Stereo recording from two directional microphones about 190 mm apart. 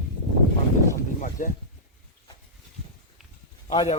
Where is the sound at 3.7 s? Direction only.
30° left (ahead or behind).